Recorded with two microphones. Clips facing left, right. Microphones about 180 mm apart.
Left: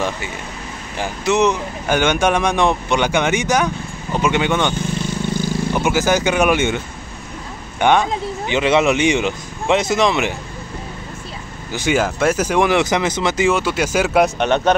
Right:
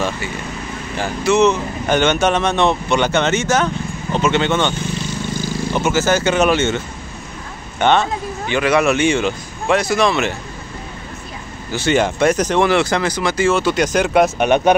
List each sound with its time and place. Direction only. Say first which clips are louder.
0.9 s speech: right 2 dB; 15° left (ahead or behind)
5.0 s vehicle: left 2 dB; 60° left (ahead or behind)
5.8 s speech: right 1 dB; 15° left (ahead or behind)
7.8 s speech: even; 10° left (ahead or behind)
11.7 s speech: right 2 dB; 15° left (ahead or behind)
12.0 s speech: right 3 dB; 5° left (ahead or behind)
14.4 s speech: right 2 dB; 15° right (ahead or behind)